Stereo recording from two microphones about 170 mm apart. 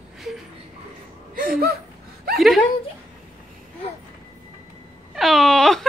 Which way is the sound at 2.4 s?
Centre (ahead or behind).